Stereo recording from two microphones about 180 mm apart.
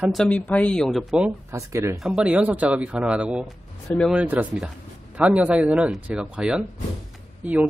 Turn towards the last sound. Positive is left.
turn(degrees=-5)  # may be behind; listen again after turning